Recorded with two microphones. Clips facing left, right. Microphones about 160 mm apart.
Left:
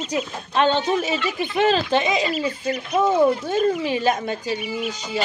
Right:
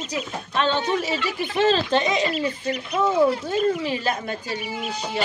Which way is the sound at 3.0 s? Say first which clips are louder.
Left 2 dB; 20° left (ahead or behind).